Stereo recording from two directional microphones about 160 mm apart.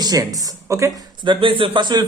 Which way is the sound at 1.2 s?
30° right (ahead or behind).